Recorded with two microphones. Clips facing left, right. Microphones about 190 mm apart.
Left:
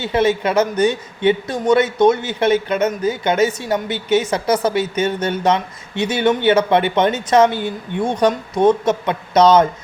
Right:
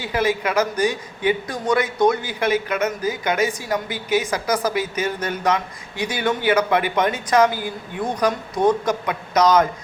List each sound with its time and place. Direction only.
0.0 s a man's voice: 25° left (ahead or behind)